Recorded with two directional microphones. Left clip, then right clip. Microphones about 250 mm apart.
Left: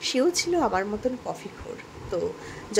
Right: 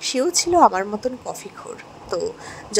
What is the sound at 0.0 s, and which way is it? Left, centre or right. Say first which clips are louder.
A woman's voice: right 3 dB; centre.